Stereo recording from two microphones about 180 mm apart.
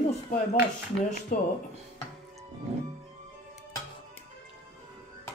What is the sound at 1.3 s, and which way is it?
Speech, 50° left (ahead or behind).